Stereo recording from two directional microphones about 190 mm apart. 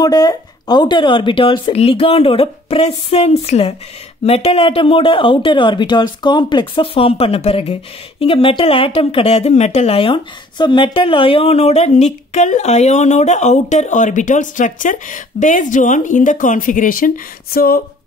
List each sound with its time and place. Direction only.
0.0 s speech: 20° left (ahead or behind); by 17.8 s 50° left (ahead or behind)